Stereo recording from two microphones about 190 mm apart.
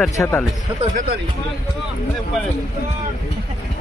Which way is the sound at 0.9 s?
50° right (ahead or behind).